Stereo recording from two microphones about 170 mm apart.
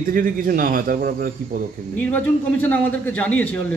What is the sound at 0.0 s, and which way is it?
A man's voice, 55° right (ahead or behind).